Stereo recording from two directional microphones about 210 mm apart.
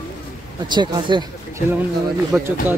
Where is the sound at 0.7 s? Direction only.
20° right (ahead or behind).